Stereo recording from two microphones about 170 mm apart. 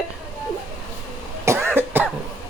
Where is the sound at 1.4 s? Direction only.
15° right (ahead or behind).